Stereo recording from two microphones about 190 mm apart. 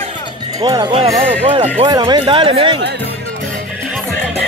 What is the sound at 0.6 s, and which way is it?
Speech, 20° right (ahead or behind).